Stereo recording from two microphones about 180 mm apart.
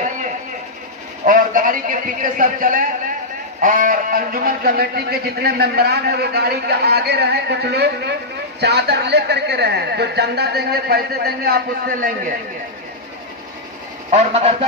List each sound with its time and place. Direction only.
1.2 s a man's voice: 45° right (ahead or behind)
14.1 s a man's voice: 35° right (ahead or behind)